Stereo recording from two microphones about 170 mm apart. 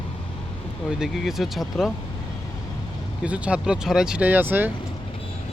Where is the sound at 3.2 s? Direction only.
5° right (ahead or behind).